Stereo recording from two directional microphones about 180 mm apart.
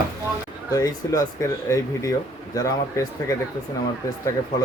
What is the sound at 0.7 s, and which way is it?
Speech, 20° left (ahead or behind).